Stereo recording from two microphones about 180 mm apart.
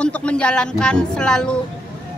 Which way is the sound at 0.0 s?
5° left (ahead or behind).